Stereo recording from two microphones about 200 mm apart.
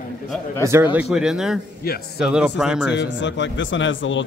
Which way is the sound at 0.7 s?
15° right (ahead or behind).